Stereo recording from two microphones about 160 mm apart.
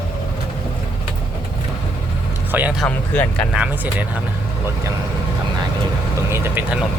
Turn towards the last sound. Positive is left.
turn(degrees=-15)  # may be behind; listen again after turning